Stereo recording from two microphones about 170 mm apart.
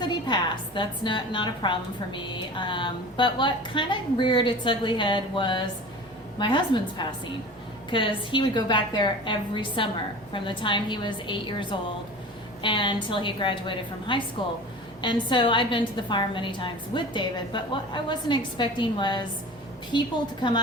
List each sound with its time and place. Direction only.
0.0 s a woman's voice: 25° left (ahead or behind)